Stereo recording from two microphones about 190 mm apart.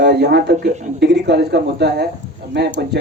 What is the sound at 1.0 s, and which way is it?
Speech, 60° right (ahead or behind).